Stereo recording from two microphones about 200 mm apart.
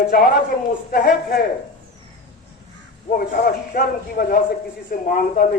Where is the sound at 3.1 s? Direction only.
45° left (ahead or behind).